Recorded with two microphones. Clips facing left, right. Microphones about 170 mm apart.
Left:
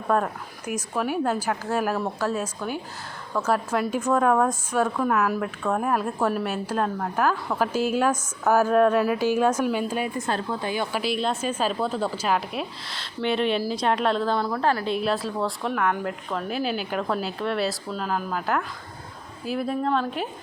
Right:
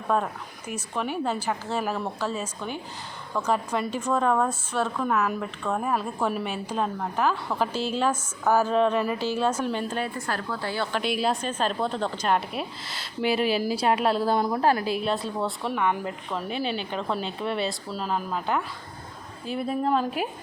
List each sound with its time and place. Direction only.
0.1 s a woman's voice: 5° left (ahead or behind)
10.2 s a woman's voice: 20° left (ahead or behind)
11.0 s a woman's voice: centre (ahead or behind); by 14.8 s 20° right (ahead or behind)
14.8 s a woman's voice: centre (ahead or behind)